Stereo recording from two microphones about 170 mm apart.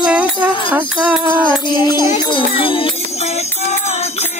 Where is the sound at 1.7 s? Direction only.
25° left (ahead or behind).